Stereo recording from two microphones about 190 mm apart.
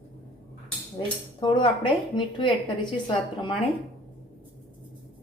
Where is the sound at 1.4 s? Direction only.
25° left (ahead or behind).